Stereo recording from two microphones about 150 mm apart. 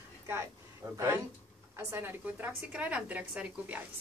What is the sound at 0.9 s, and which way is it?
A woman's voice, 20° right (ahead or behind).